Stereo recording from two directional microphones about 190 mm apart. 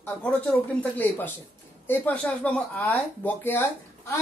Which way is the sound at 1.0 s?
10° left (ahead or behind).